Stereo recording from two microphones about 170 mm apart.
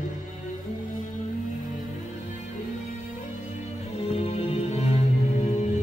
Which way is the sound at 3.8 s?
40° left (ahead or behind).